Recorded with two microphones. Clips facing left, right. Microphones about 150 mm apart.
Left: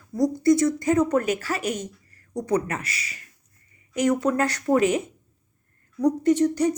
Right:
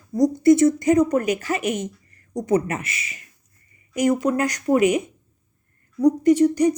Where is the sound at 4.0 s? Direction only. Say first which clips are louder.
Right 2 dB; 10° right (ahead or behind).